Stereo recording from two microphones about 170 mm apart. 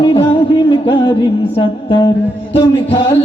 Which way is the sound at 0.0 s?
35° left (ahead or behind).